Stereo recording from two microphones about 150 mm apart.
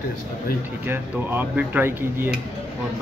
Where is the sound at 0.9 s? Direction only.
10° right (ahead or behind).